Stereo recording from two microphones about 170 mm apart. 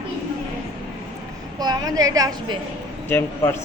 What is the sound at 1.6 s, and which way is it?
Speech, 25° right (ahead or behind).